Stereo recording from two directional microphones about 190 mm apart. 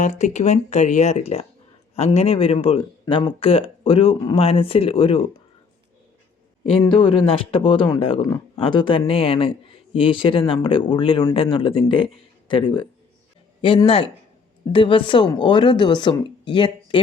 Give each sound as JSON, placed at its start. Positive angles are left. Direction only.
{"t": 0.0, "sound": "speech", "side_deg": 40}
{"t": 6.9, "sound": "speech", "side_deg": 30}